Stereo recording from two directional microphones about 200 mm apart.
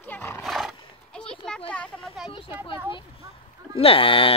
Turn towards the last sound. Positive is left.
turn(degrees=25)  # may be behind; listen again after turning